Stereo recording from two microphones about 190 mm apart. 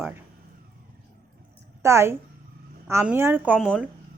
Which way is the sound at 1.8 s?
15° right (ahead or behind).